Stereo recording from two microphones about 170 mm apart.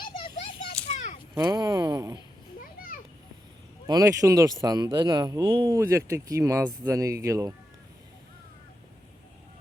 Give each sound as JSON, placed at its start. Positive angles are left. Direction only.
{"t": 0.9, "sound": "a sound", "side_deg": 45}
{"t": 1.4, "sound": "speech", "side_deg": -25}
{"t": 2.6, "sound": "children playing", "side_deg": 55}
{"t": 3.8, "sound": "speech", "side_deg": -20}